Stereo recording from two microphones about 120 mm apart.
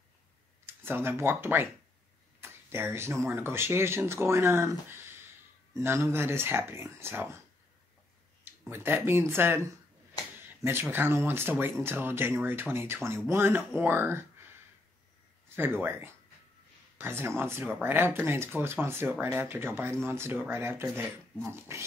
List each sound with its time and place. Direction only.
0.7 s speech: 20° right (ahead or behind)
8.6 s speech: 20° right (ahead or behind)
15.5 s speech: 15° right (ahead or behind)